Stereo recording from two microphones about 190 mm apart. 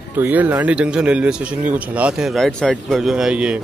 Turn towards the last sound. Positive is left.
turn(degrees=-5)  # may be behind; listen again after turning